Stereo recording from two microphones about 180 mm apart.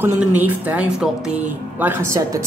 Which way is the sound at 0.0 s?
10° right (ahead or behind).